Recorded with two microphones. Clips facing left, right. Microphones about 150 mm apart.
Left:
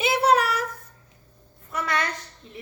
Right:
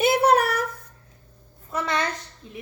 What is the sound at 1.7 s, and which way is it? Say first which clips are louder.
Speech: right 1 dB; 25° right (ahead or behind).